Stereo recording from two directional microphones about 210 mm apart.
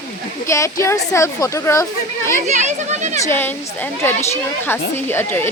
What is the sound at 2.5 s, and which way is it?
Speech, 35° right (ahead or behind).